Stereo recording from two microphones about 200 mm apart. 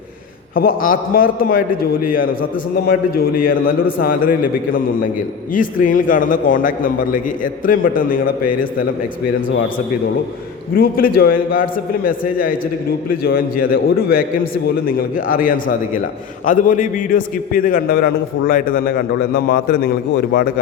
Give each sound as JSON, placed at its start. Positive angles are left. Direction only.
{"t": 0.5, "sound": "a man's voice", "side_deg": 45}
{"t": 5.5, "sound": "a man's voice", "side_deg": 45}
{"t": 10.8, "sound": "a man's voice", "side_deg": 45}